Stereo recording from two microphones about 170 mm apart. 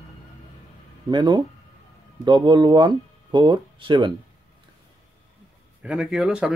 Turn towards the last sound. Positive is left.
turn(degrees=-5)  # may be behind; listen again after turning